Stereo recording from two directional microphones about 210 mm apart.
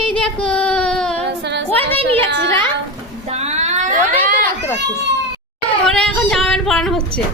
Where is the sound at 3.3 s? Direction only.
30° right (ahead or behind).